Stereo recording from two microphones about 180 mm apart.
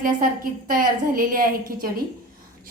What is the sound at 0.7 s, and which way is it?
A woman's voice, 50° right (ahead or behind).